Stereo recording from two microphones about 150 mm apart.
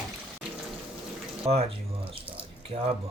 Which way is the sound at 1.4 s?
40° right (ahead or behind).